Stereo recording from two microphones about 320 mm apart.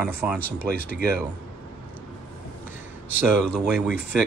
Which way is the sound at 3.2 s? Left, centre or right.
Centre.